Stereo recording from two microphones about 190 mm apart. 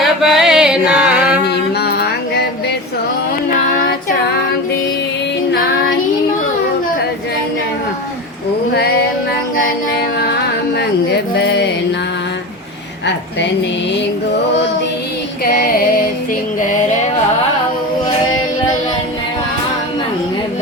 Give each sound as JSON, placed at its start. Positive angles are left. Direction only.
{"t": 0.0, "sound": "chant", "side_deg": 0}
{"t": 1.5, "sound": "music", "side_deg": 60}
{"t": 5.5, "sound": "female singing", "side_deg": 55}
{"t": 11.3, "sound": "music", "side_deg": 65}
{"t": 15.4, "sound": "female singing", "side_deg": 55}